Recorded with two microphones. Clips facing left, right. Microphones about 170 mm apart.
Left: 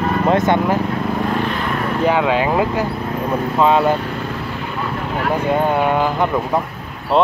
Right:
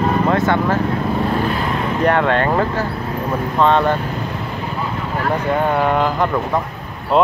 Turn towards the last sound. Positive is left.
turn(degrees=0)  # may be behind; listen again after turning